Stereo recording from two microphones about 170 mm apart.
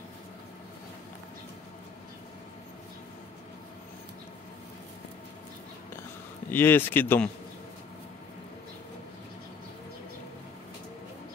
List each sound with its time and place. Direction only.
6.5 s speech: 10° left (ahead or behind)